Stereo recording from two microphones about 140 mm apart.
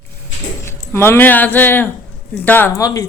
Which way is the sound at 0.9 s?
15° left (ahead or behind).